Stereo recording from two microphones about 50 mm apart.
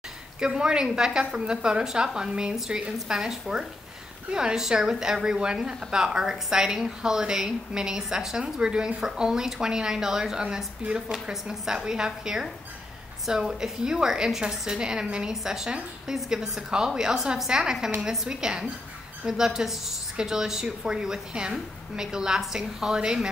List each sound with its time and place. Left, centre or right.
0.4 s a woman's voice: centre